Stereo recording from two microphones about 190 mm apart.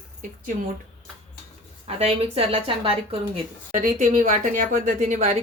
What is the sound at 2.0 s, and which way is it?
Speech, 30° right (ahead or behind).